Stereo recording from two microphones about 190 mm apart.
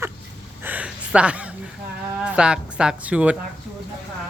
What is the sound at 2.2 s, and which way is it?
Speech, 5° right (ahead or behind).